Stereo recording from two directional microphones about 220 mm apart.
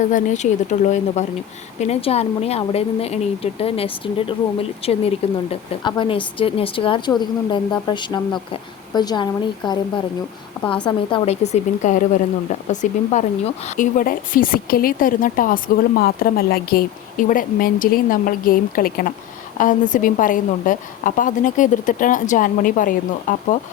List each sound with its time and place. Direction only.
0.0 s a woman's voice: 35° left (ahead or behind)
10.8 s a woman's voice: 25° left (ahead or behind)